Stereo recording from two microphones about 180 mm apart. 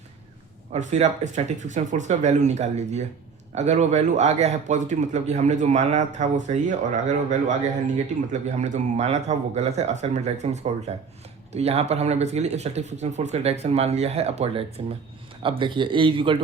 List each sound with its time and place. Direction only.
0.7 s speech: 40° right (ahead or behind)